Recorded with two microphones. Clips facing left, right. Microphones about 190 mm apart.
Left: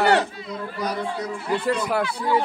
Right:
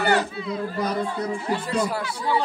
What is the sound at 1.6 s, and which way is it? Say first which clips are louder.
Speech: left 2 dB; 60° left (ahead or behind).